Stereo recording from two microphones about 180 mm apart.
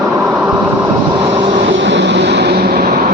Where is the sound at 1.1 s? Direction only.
30° right (ahead or behind).